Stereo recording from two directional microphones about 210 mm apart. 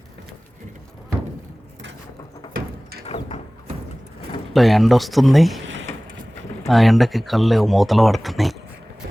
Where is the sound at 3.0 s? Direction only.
30° left (ahead or behind).